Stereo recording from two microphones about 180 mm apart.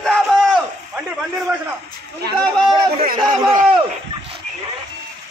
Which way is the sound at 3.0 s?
50° right (ahead or behind).